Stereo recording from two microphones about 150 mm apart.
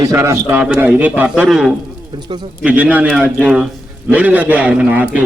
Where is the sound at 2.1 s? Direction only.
30° right (ahead or behind).